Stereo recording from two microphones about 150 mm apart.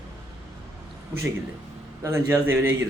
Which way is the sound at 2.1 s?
15° right (ahead or behind).